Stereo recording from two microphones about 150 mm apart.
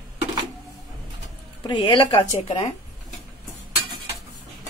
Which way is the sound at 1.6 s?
35° left (ahead or behind).